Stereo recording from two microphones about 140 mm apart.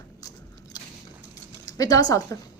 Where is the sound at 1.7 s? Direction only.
25° left (ahead or behind).